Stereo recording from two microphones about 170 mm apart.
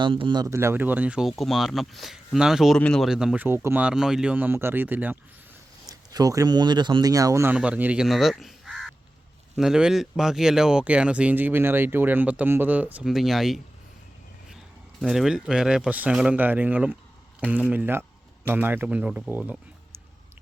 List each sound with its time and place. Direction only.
0.0 s speech: 30° right (ahead or behind); by 5.1 s 10° right (ahead or behind)
5.9 s speech: 20° right (ahead or behind); by 13.6 s centre (ahead or behind)
15.0 s speech: centre (ahead or behind)